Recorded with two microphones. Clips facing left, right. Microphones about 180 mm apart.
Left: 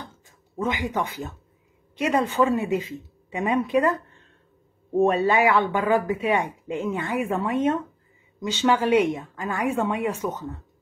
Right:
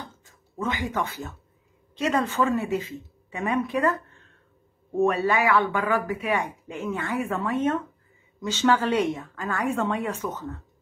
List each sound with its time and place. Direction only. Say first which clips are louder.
0.2 s speech: left 3 dB; 15° left (ahead or behind)
5.0 s speech: left 2 dB; 25° left (ahead or behind)